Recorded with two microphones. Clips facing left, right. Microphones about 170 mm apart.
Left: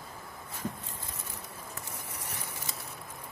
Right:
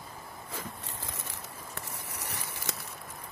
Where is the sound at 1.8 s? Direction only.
75° right (ahead or behind).